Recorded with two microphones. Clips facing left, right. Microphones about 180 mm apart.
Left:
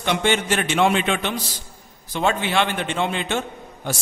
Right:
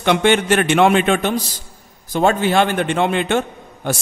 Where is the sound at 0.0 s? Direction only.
60° right (ahead or behind).